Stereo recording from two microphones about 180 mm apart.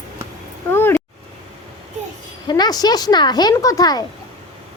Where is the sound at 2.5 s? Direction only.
20° left (ahead or behind).